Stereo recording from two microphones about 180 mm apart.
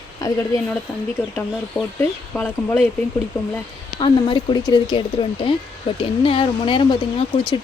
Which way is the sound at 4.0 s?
30° left (ahead or behind).